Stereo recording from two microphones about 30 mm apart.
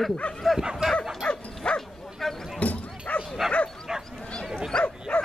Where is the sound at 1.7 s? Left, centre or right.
Left.